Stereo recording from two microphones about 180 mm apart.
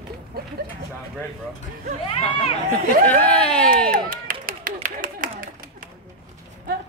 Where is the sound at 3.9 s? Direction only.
50° right (ahead or behind).